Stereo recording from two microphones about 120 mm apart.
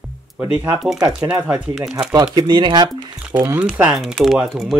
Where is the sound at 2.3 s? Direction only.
35° right (ahead or behind).